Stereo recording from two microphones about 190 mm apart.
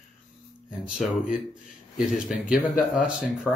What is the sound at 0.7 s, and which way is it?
Speech, 5° right (ahead or behind).